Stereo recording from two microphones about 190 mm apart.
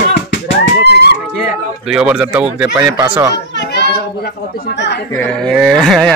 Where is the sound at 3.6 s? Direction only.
60° left (ahead or behind).